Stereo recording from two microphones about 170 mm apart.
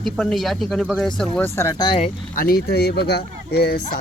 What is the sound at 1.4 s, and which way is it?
Speech, 15° left (ahead or behind).